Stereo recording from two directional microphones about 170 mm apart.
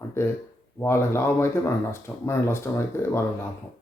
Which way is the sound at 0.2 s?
15° left (ahead or behind).